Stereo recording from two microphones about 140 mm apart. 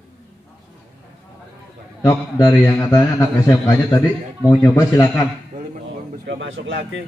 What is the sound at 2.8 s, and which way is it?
A man's voice, 25° left (ahead or behind).